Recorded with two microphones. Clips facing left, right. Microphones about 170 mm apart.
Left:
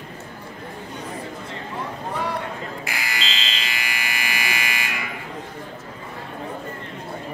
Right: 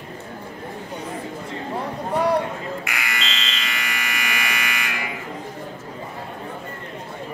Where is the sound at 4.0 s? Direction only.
30° left (ahead or behind).